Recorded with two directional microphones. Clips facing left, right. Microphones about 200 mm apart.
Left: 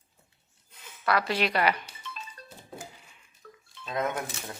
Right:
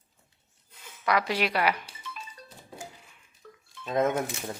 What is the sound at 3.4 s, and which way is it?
Dishes, 5° right (ahead or behind).